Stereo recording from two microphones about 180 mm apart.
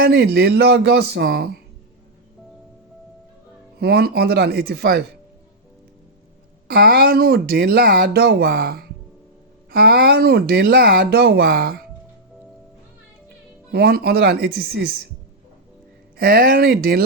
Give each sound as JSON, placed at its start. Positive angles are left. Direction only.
{"t": 0.0, "sound": "speech", "side_deg": -65}
{"t": 3.8, "sound": "speech", "side_deg": -60}
{"t": 6.7, "sound": "speech", "side_deg": -60}
{"t": 13.7, "sound": "speech", "side_deg": -60}
{"t": 16.1, "sound": "speech", "side_deg": -60}